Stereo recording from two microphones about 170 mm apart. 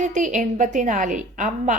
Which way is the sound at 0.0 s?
45° right (ahead or behind).